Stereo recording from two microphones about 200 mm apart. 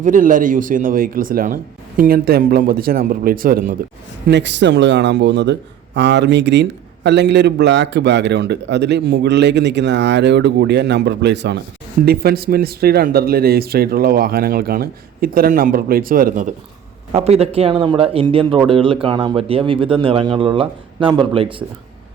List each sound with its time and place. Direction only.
0.0 s speech: 40° right (ahead or behind)
4.3 s speech: 60° right (ahead or behind); by 16.5 s 45° right (ahead or behind)
17.1 s speech: 30° right (ahead or behind)